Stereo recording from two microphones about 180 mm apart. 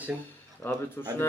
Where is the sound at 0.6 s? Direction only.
10° left (ahead or behind).